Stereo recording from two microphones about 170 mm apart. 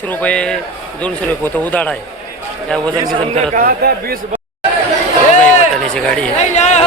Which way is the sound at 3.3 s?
50° right (ahead or behind).